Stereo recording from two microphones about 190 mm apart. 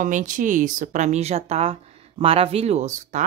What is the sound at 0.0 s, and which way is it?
Speech, 45° right (ahead or behind).